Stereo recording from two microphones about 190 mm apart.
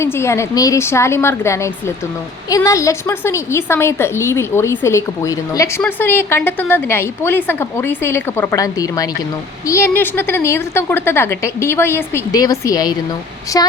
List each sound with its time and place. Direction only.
0.0 s a woman's voice: 15° left (ahead or behind)